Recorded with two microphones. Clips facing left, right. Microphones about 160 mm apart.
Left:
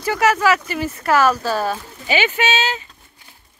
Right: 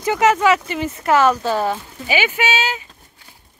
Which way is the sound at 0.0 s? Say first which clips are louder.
Right 2 dB; 20° right (ahead or behind).